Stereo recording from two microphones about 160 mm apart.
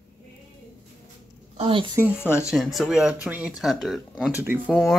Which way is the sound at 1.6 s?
35° right (ahead or behind).